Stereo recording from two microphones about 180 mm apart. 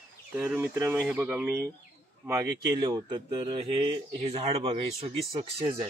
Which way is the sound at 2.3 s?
20° right (ahead or behind).